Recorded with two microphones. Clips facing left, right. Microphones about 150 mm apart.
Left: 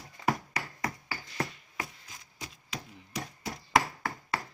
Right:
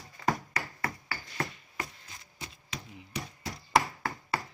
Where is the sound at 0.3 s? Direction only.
15° left (ahead or behind).